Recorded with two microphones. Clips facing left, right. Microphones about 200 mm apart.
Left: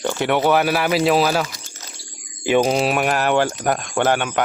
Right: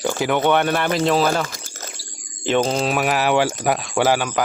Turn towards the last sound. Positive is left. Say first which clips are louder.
# even
turn(degrees=0)  # may be behind; listen again after turning